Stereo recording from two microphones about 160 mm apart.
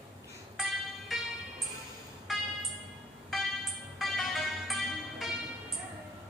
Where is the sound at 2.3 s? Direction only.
Centre (ahead or behind).